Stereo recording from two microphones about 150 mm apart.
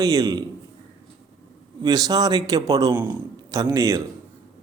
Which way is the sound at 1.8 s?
25° right (ahead or behind).